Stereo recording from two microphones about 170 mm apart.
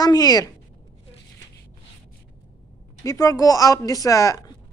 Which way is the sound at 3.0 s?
20° left (ahead or behind).